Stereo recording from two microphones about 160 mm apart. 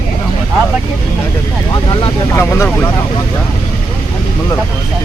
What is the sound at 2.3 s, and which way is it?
Vehicle, 15° left (ahead or behind).